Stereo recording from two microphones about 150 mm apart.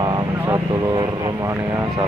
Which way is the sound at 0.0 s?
30° right (ahead or behind).